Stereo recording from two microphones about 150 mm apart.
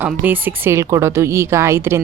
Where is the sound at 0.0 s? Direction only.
10° right (ahead or behind).